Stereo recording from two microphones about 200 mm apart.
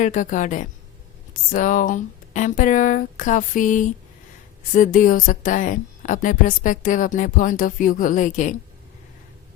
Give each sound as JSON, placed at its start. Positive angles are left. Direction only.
{"t": 0.0, "sound": "a woman's voice", "side_deg": 40}